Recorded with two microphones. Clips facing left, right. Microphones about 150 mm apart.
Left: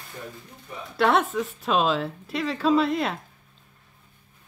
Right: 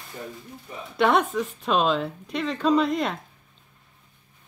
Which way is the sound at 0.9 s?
Centre (ahead or behind).